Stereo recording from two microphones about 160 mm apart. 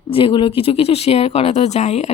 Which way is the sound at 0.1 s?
35° left (ahead or behind).